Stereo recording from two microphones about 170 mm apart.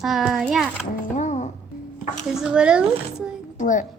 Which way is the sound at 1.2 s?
45° left (ahead or behind).